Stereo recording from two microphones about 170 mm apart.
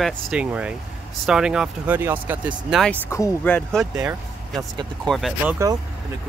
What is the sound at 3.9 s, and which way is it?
Speech, 10° right (ahead or behind).